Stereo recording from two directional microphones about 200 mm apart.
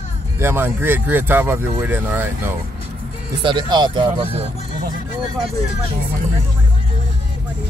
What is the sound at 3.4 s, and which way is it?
Speech, 25° right (ahead or behind).